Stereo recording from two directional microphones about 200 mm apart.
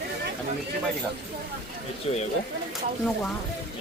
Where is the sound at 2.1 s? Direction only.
30° left (ahead or behind).